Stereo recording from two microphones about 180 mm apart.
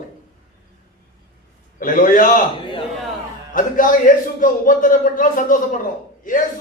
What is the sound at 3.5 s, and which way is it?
A man's voice, 50° left (ahead or behind).